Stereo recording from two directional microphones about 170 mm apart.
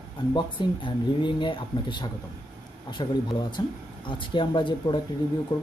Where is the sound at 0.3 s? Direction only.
25° left (ahead or behind).